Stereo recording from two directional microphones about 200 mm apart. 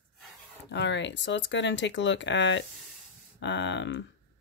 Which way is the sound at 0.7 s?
60° left (ahead or behind).